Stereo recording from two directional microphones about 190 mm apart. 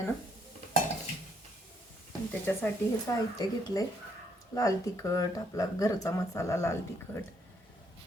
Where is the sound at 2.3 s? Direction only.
10° left (ahead or behind).